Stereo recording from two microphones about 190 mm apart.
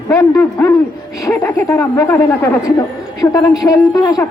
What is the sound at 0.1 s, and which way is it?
A woman's voice, 15° left (ahead or behind).